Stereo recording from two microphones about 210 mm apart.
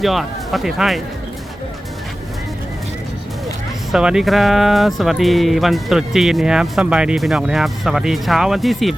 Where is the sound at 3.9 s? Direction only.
5° right (ahead or behind).